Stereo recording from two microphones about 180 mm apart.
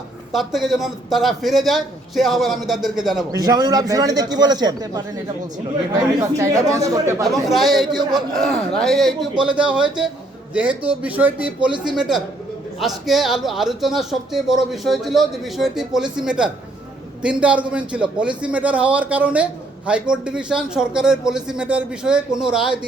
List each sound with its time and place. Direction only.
0.3 s a man's voice: centre (ahead or behind)
3.3 s a man's voice: 20° right (ahead or behind)
7.4 s a man's voice: centre (ahead or behind)
7.9 s a man's voice: 25° right (ahead or behind)
8.4 s a man's voice: centre (ahead or behind)